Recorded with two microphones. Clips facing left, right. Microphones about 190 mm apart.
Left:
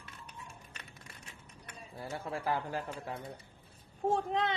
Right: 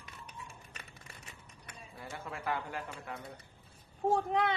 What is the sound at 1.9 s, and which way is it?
Speech, 35° left (ahead or behind).